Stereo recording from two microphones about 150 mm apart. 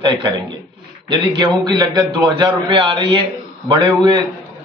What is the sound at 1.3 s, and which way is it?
A man's voice, 30° right (ahead or behind).